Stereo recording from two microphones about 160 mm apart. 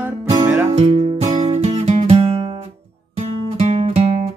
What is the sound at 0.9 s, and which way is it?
Music, 45° right (ahead or behind).